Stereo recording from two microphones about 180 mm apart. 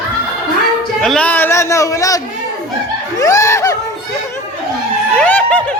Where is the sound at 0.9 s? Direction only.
5° left (ahead or behind).